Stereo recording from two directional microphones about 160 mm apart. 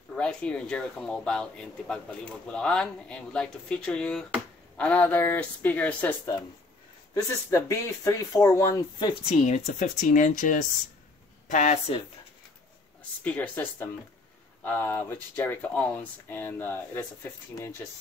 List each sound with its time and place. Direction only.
0.1 s speech: 5° left (ahead or behind)
7.2 s speech: 20° left (ahead or behind)
9.3 s speech: 50° left (ahead or behind)
13.2 s speech: 10° left (ahead or behind)